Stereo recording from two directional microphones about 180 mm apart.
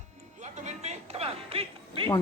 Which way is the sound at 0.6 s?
40° right (ahead or behind).